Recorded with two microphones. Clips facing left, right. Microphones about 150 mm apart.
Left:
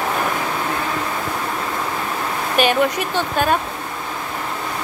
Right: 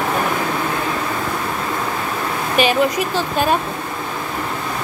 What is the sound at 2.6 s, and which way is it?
Speech, 45° left (ahead or behind).